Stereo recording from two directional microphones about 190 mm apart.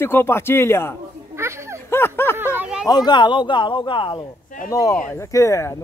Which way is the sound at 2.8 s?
20° left (ahead or behind).